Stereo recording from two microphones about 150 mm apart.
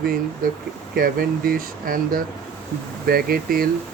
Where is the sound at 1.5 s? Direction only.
70° right (ahead or behind).